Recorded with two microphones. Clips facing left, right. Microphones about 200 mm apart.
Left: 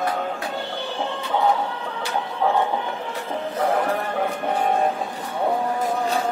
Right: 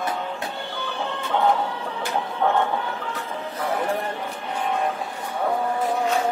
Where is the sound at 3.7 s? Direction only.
50° left (ahead or behind).